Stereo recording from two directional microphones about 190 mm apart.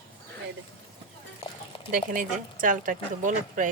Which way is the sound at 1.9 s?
45° right (ahead or behind).